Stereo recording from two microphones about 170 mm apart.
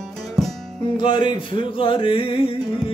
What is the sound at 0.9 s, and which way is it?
Music, 30° left (ahead or behind).